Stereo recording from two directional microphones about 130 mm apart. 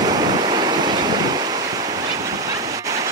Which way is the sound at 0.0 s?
30° right (ahead or behind).